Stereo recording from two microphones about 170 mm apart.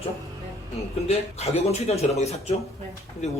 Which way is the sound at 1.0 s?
40° left (ahead or behind).